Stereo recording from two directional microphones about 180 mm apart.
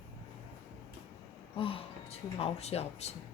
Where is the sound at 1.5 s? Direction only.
30° left (ahead or behind).